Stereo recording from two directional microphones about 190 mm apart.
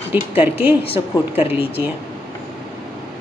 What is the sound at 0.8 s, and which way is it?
Speech, 30° left (ahead or behind).